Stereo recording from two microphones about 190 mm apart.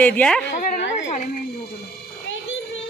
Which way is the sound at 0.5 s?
50° left (ahead or behind).